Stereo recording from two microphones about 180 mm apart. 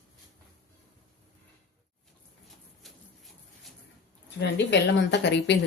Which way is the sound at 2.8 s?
Centre (ahead or behind).